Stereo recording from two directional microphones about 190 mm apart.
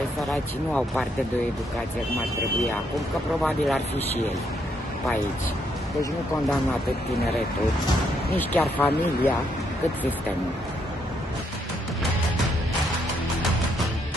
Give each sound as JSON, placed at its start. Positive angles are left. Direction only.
{"t": 0.3, "sound": "speech", "side_deg": 5}
{"t": 3.4, "sound": "speech", "side_deg": 0}
{"t": 8.4, "sound": "speech", "side_deg": 10}